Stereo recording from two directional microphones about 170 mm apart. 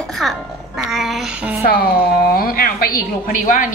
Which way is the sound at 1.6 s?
60° left (ahead or behind).